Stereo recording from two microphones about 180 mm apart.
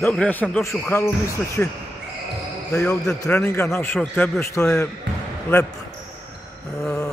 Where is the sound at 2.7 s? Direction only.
5° left (ahead or behind).